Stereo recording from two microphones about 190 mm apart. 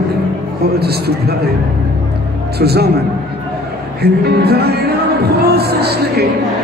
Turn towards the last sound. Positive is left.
turn(degrees=-55)  # may be behind; listen again after turning